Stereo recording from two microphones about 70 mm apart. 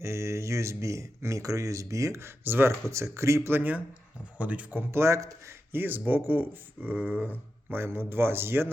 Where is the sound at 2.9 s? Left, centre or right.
Right.